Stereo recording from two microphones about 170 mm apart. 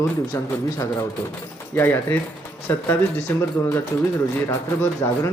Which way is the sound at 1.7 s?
10° left (ahead or behind).